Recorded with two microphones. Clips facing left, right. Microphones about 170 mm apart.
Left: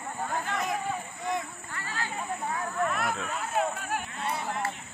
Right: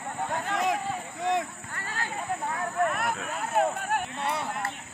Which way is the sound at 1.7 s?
50° right (ahead or behind).